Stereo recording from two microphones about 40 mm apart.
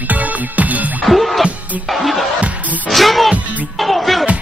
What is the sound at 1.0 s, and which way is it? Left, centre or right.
Music, centre.